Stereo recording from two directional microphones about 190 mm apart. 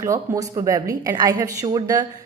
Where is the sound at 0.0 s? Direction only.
15° right (ahead or behind).